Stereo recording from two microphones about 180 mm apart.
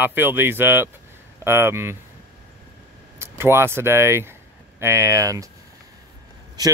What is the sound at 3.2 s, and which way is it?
Speech, 15° right (ahead or behind).